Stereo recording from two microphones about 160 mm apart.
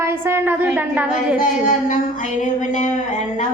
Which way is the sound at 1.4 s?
55° left (ahead or behind).